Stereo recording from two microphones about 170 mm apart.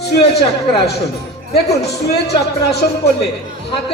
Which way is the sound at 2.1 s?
75° left (ahead or behind).